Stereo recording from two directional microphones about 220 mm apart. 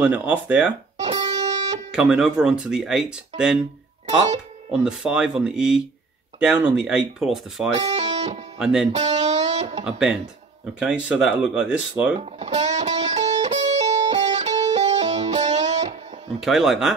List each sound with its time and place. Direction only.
0.0 s speech: 5° right (ahead or behind)
1.1 s music: 20° right (ahead or behind)
1.9 s speech: 5° right (ahead or behind)
4.8 s speech: 5° right (ahead or behind)
7.7 s guitar: 30° right (ahead or behind)
8.5 s speech: 5° right (ahead or behind)
8.9 s music: 30° right (ahead or behind)
9.8 s speech: 5° right (ahead or behind)
12.4 s music: 30° right (ahead or behind)
16.3 s speech: centre (ahead or behind)